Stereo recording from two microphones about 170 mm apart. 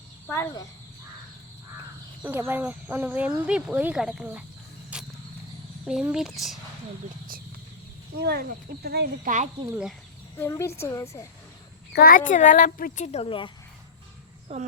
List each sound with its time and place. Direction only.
0.3 s a woman's voice: 15° left (ahead or behind)
2.2 s speech: 10° right (ahead or behind)
4.9 s cricket: 5° right (ahead or behind)
5.8 s speech: 5° right (ahead or behind)
8.2 s speech: 65° right (ahead or behind)
10.3 s a woman's voice: 15° left (ahead or behind)
11.9 s speech: 55° left (ahead or behind)
13.1 s speech: 35° left (ahead or behind)
14.5 s speech: 35° right (ahead or behind)